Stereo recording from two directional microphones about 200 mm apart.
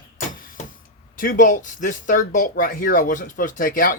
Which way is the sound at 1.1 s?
40° left (ahead or behind).